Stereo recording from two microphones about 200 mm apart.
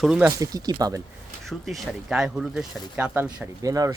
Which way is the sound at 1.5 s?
Centre (ahead or behind).